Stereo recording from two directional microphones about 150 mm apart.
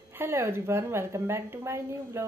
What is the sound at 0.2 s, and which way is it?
A woman's voice, 15° right (ahead or behind).